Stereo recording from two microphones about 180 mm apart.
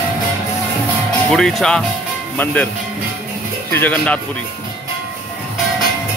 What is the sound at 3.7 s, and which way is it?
Speech, 5° left (ahead or behind).